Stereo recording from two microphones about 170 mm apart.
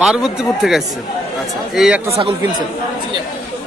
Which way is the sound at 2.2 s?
30° right (ahead or behind).